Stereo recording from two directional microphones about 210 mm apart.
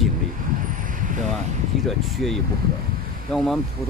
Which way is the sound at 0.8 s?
40° right (ahead or behind).